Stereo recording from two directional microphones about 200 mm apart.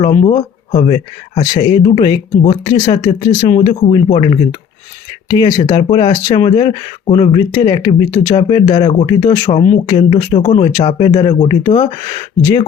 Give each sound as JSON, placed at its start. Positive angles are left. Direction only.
{"t": 0.0, "sound": "speech", "side_deg": 30}
{"t": 3.7, "sound": "speech", "side_deg": 30}